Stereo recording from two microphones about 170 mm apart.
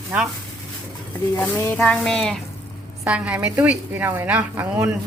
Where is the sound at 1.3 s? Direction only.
15° left (ahead or behind).